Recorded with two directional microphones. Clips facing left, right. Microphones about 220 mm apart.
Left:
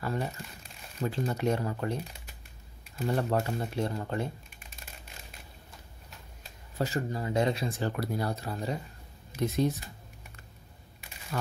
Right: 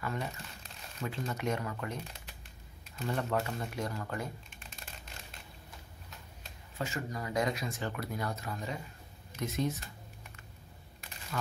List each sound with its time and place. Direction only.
0.0 s speech: 35° left (ahead or behind)
3.0 s speech: 35° left (ahead or behind)
6.8 s speech: 30° left (ahead or behind)